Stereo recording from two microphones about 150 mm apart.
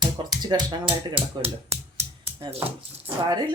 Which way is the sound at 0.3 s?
25° right (ahead or behind).